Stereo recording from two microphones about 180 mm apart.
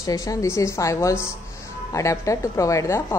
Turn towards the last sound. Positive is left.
turn(degrees=15)  # may be behind; listen again after turning